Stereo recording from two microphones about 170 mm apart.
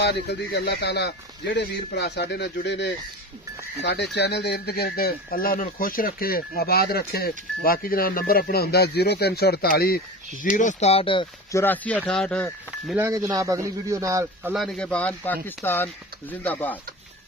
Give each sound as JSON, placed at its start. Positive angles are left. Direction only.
{"t": 0.0, "sound": "speech", "side_deg": 75}
{"t": 11.5, "sound": "a man's voice", "side_deg": 10}
{"t": 12.9, "sound": "speech", "side_deg": -15}
{"t": 14.5, "sound": "a man's voice", "side_deg": 0}